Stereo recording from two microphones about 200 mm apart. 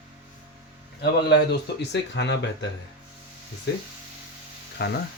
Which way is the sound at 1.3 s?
55° left (ahead or behind).